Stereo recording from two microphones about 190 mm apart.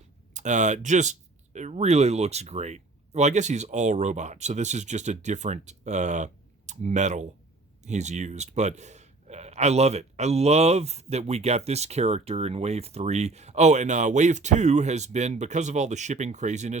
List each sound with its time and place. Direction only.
0.3 s speech: 40° right (ahead or behind)